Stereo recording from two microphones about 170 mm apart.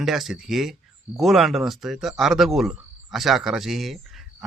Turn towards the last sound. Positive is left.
turn(degrees=0)  # may be behind; listen again after turning